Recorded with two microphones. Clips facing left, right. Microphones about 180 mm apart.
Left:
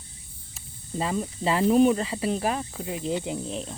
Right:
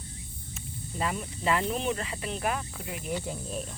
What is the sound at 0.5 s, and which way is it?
Speech, 30° left (ahead or behind).